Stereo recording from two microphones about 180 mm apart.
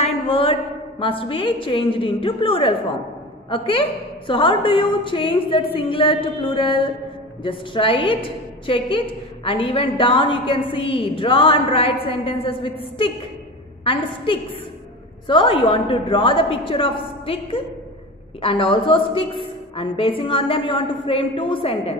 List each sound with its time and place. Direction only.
0.0 s a woman's voice: 30° left (ahead or behind)
13.8 s a woman's voice: 30° left (ahead or behind)